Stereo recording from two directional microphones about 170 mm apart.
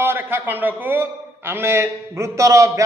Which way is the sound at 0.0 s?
15° right (ahead or behind).